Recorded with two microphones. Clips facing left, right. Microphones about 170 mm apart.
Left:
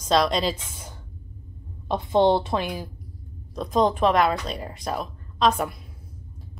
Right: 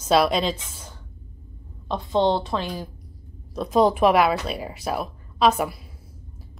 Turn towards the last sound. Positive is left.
turn(degrees=-5)  # may be behind; listen again after turning